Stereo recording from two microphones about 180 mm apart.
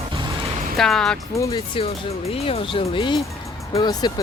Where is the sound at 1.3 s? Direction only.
25° left (ahead or behind).